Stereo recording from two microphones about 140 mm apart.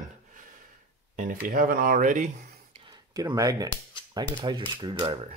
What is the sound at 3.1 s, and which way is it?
Speech, 25° right (ahead or behind).